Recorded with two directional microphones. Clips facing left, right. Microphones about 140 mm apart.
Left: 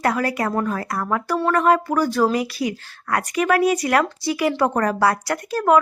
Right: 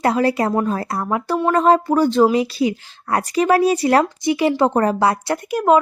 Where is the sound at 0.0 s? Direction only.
25° right (ahead or behind).